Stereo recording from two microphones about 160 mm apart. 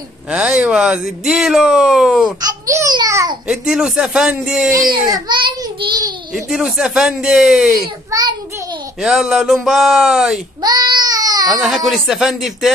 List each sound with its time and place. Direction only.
0.3 s speech: 5° right (ahead or behind)
2.4 s speech: 20° right (ahead or behind)
3.4 s speech: 5° right (ahead or behind)
5.1 s child singing: 25° right (ahead or behind)
6.3 s speech: 5° right (ahead or behind)
8.1 s child singing: 25° right (ahead or behind)
9.0 s speech: 5° right (ahead or behind)
10.6 s baby cry: 25° right (ahead or behind)
11.6 s speech: centre (ahead or behind)